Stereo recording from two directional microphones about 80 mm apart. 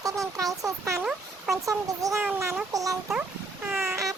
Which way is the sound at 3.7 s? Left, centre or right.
Centre.